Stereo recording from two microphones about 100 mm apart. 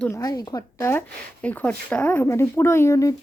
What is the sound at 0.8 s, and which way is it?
Speech, 15° left (ahead or behind).